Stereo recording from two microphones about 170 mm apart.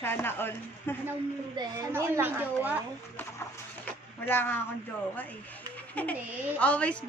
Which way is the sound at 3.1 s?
10° left (ahead or behind).